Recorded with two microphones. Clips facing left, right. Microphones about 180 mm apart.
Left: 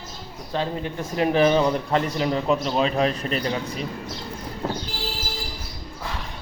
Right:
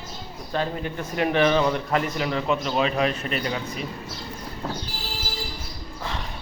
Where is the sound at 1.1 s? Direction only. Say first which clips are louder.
Left 2 dB; 35° left (ahead or behind).